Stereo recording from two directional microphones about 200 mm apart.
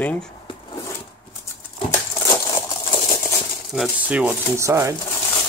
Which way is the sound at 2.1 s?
15° left (ahead or behind).